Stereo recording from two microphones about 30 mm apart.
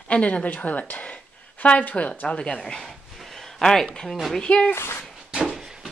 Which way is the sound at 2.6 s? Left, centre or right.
Centre.